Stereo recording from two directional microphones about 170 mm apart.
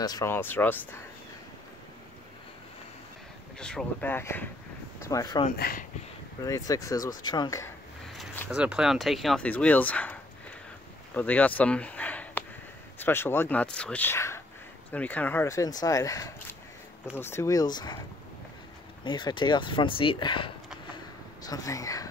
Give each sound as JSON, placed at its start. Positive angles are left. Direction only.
{"t": 0.0, "sound": "speech", "side_deg": 20}
{"t": 3.5, "sound": "speech", "side_deg": 5}
{"t": 5.6, "sound": "speech", "side_deg": 55}
{"t": 6.7, "sound": "speech", "side_deg": 20}
{"t": 8.5, "sound": "speech", "side_deg": -5}
{"t": 11.1, "sound": "speech", "side_deg": 10}
{"t": 19.0, "sound": "speech", "side_deg": 25}